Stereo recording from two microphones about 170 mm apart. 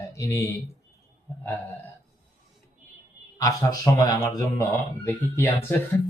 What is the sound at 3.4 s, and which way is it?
Speech, 20° left (ahead or behind).